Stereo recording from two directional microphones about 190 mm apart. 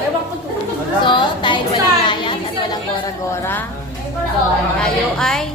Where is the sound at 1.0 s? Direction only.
25° left (ahead or behind).